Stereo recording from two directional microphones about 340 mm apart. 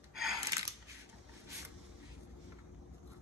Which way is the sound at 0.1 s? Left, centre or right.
Centre.